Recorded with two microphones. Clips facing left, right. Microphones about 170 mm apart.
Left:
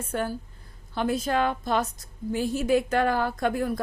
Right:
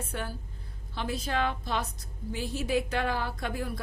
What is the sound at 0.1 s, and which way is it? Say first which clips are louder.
A woman's voice: left 8 dB; 45° left (ahead or behind).